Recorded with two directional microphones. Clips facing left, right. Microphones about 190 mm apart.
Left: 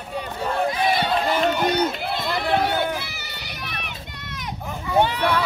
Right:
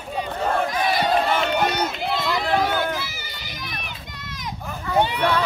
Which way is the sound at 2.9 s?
65° left (ahead or behind).